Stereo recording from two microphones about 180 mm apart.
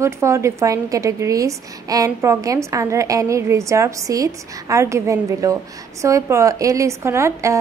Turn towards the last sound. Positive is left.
turn(degrees=-15)  # may be behind; listen again after turning